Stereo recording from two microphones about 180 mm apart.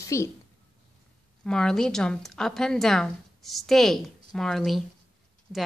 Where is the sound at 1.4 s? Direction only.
5° left (ahead or behind).